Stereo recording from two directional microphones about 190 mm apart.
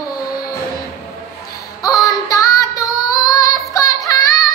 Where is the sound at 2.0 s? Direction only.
15° left (ahead or behind).